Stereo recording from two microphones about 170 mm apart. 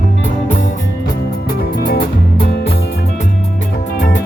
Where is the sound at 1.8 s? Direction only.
65° left (ahead or behind).